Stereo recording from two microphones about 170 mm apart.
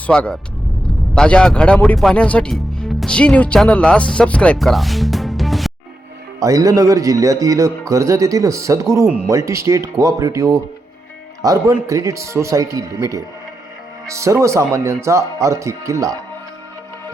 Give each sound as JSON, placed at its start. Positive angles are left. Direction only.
{"t": 0.1, "sound": "speech", "side_deg": 5}
{"t": 6.4, "sound": "a man's voice", "side_deg": -20}